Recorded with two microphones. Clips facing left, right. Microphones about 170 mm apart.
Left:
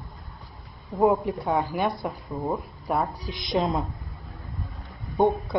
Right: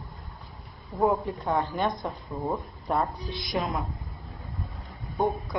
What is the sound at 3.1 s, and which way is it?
Speech, 10° left (ahead or behind).